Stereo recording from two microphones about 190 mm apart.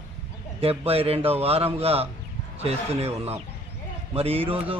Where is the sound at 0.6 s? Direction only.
30° right (ahead or behind).